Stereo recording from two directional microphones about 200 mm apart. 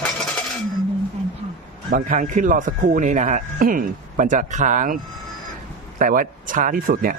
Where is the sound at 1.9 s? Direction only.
40° right (ahead or behind).